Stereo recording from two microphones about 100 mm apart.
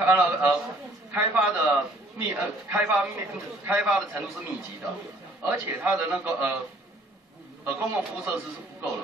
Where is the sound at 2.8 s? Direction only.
10° right (ahead or behind).